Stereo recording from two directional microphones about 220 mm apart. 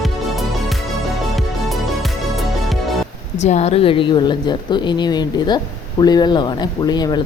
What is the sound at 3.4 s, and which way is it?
A woman's voice, 30° left (ahead or behind).